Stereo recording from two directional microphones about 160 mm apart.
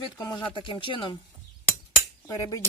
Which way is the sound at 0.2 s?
25° left (ahead or behind).